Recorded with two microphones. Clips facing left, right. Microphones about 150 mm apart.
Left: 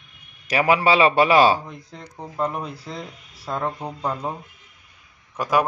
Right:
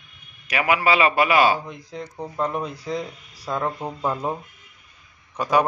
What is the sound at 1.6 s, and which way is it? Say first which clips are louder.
Speech: right 4 dB; centre (ahead or behind).